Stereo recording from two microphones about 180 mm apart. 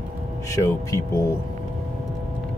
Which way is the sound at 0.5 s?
15° left (ahead or behind).